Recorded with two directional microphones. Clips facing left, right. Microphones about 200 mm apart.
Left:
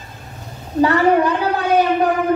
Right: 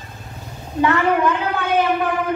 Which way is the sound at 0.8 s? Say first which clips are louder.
Left 3 dB; 35° left (ahead or behind).